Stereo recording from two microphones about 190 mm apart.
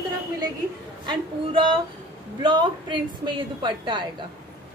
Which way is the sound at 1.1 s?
25° right (ahead or behind).